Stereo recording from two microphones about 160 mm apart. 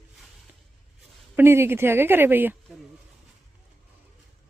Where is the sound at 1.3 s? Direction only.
15° right (ahead or behind).